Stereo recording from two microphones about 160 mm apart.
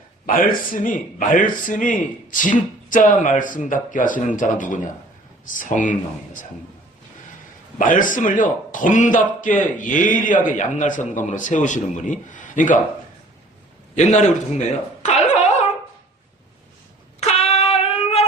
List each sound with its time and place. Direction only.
0.3 s a man's voice: 60° left (ahead or behind)
7.8 s a man's voice: 55° left (ahead or behind)
13.9 s a man's voice: 50° left (ahead or behind)
15.0 s a sound: 45° left (ahead or behind)
17.2 s child singing: 40° left (ahead or behind)